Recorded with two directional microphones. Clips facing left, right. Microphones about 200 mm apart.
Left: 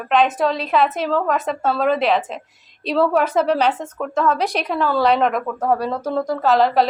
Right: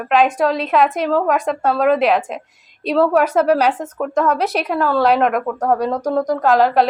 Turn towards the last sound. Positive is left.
turn(degrees=-5)  # may be behind; listen again after turning